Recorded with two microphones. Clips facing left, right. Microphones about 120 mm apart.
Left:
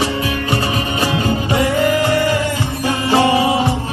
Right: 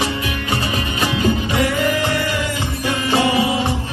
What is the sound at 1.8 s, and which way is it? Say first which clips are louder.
Music: left 5 dB; 40° left (ahead or behind).